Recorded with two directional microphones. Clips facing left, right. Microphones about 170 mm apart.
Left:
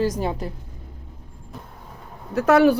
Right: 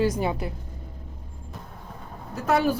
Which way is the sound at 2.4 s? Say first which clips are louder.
Left 7 dB; 70° left (ahead or behind).